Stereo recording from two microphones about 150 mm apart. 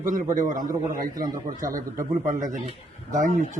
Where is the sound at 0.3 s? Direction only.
65° right (ahead or behind).